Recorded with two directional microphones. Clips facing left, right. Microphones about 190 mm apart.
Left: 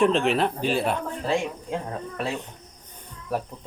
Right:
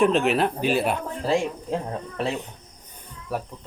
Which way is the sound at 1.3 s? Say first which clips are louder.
Right 3 dB; 35° right (ahead or behind).